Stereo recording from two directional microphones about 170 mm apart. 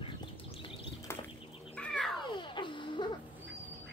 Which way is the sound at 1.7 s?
5° left (ahead or behind).